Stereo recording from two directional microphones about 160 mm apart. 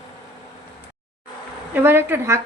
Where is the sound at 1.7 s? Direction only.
15° right (ahead or behind).